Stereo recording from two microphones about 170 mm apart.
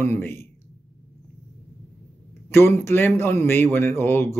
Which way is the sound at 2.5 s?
15° left (ahead or behind).